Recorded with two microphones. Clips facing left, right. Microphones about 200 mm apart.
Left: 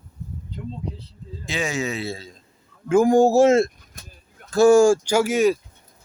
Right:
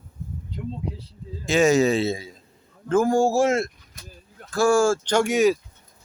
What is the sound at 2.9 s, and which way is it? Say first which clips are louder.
A man's voice: left 4 dB; 15° left (ahead or behind).